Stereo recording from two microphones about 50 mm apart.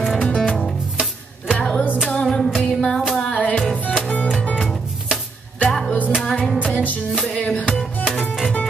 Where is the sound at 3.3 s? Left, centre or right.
Left.